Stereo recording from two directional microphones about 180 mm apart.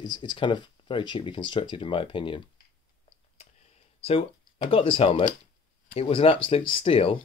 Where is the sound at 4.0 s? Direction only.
30° left (ahead or behind).